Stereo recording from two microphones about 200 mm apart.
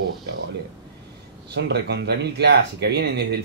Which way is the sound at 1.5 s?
60° right (ahead or behind).